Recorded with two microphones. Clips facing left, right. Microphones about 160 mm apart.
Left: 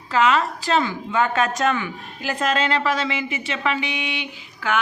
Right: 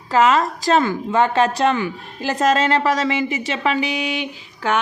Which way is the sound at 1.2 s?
30° right (ahead or behind).